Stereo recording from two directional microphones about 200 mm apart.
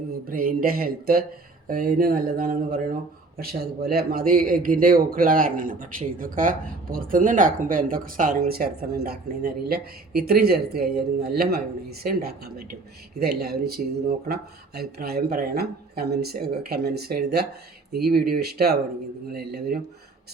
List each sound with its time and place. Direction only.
0.3 s speech: 45° right (ahead or behind)